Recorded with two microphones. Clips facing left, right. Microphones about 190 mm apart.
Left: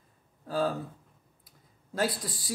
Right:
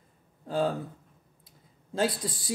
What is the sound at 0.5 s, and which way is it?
Speech, 25° right (ahead or behind).